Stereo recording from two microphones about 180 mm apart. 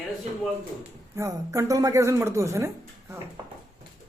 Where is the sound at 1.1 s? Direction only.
15° right (ahead or behind).